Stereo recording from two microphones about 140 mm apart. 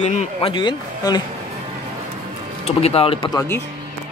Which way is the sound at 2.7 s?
45° left (ahead or behind).